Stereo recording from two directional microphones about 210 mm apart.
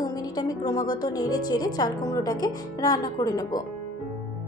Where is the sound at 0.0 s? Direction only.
20° left (ahead or behind).